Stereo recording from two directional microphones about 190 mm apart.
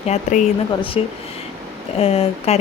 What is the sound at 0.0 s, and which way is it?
Speech, 40° left (ahead or behind).